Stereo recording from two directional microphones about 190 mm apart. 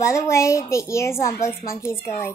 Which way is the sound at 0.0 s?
15° left (ahead or behind).